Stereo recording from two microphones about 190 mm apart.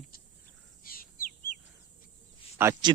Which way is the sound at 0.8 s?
50° left (ahead or behind).